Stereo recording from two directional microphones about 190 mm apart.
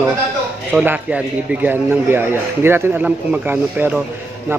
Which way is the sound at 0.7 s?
5° right (ahead or behind).